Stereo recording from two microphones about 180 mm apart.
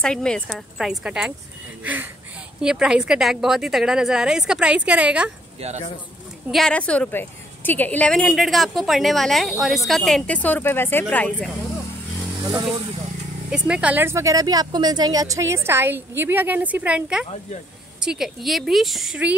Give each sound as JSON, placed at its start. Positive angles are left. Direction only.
{"t": 0.0, "sound": "a woman's voice", "side_deg": 5}
{"t": 2.6, "sound": "a woman's voice", "side_deg": -5}
{"t": 5.6, "sound": "speech", "side_deg": -40}
{"t": 6.5, "sound": "a woman's voice", "side_deg": 5}
{"t": 13.5, "sound": "a woman's voice", "side_deg": -5}